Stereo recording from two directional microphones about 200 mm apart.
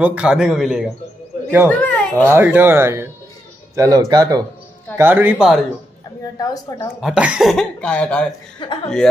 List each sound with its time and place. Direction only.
0.0 s a child's voice: 5° right (ahead or behind)
2.2 s speech: 10° right (ahead or behind)
6.3 s a woman's voice: 15° left (ahead or behind)
7.0 s speech: 5° right (ahead or behind)
8.6 s speech: 25° left (ahead or behind)